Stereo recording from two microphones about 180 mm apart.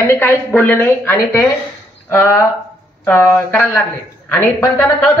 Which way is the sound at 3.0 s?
10° left (ahead or behind).